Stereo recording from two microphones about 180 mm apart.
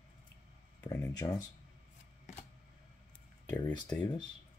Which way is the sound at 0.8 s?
20° left (ahead or behind).